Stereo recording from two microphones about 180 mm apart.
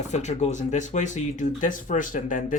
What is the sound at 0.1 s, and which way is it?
Speech, 40° left (ahead or behind).